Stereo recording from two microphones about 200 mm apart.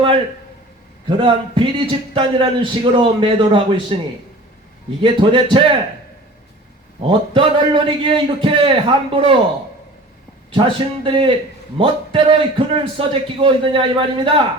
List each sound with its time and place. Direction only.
1.0 s a man's voice: 25° right (ahead or behind)
5.0 s a man's voice: 25° right (ahead or behind)
7.1 s a man's voice: 25° right (ahead or behind)
10.5 s a man's voice: 25° right (ahead or behind)